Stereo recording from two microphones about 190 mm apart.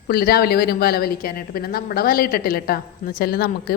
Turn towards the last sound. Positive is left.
turn(degrees=55)  # may be behind; listen again after turning